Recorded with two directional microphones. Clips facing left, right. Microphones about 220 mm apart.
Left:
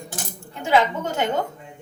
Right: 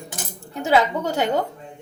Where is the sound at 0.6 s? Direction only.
40° right (ahead or behind).